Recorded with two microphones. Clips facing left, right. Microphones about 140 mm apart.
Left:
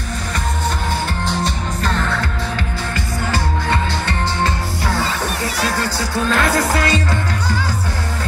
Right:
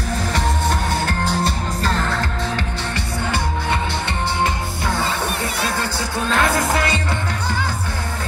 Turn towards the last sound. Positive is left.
turn(degrees=-25)  # may be behind; listen again after turning